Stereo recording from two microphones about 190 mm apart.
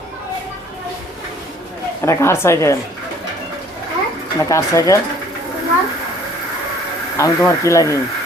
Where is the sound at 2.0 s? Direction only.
15° left (ahead or behind).